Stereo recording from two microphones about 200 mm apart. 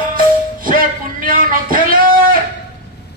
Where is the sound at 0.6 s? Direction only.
45° right (ahead or behind).